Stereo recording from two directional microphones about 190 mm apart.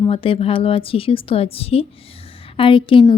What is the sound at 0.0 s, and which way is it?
Speech, 30° left (ahead or behind).